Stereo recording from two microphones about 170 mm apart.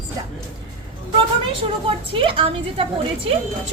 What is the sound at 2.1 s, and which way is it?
Speech, 30° right (ahead or behind).